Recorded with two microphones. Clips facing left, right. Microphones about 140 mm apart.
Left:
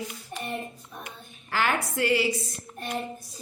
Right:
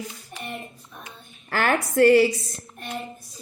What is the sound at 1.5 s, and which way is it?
Speech, 50° right (ahead or behind).